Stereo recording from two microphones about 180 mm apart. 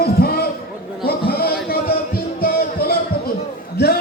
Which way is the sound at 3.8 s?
65° left (ahead or behind).